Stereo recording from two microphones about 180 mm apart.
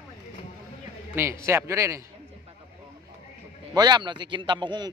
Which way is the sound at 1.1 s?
15° right (ahead or behind).